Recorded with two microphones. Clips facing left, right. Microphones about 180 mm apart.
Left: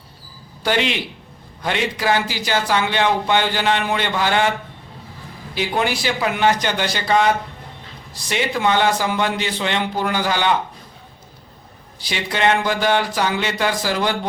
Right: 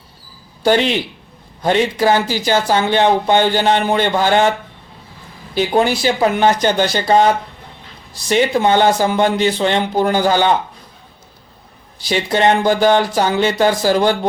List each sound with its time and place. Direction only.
0.6 s a man's voice: 40° right (ahead or behind)
5.5 s a man's voice: 40° right (ahead or behind)
8.3 s a man's voice: 40° right (ahead or behind)
12.1 s a man's voice: 40° right (ahead or behind)